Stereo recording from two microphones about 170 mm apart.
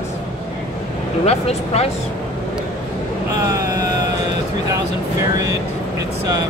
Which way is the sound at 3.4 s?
20° right (ahead or behind).